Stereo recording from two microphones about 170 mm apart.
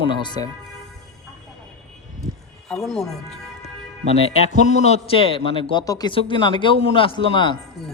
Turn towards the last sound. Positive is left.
turn(degrees=30)  # may be behind; listen again after turning